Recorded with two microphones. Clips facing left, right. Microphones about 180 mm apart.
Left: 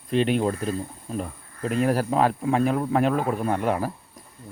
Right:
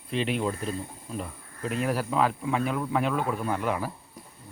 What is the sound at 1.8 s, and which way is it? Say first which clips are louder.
Speech: left 5 dB; 40° left (ahead or behind).